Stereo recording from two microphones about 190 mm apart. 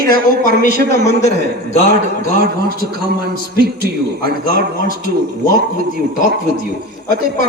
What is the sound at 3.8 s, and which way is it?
Speech, 55° right (ahead or behind).